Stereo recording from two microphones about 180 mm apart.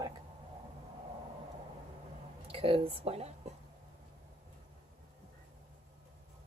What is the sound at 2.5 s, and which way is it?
Speech, 30° right (ahead or behind).